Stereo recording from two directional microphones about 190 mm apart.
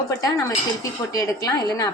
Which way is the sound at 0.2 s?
20° left (ahead or behind).